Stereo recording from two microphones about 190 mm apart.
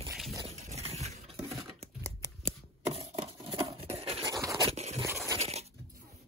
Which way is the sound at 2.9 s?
30° right (ahead or behind).